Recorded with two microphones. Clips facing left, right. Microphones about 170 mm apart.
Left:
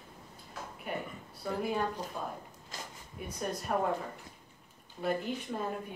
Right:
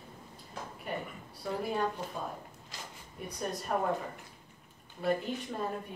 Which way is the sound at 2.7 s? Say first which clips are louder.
Left 2 dB; 45° left (ahead or behind).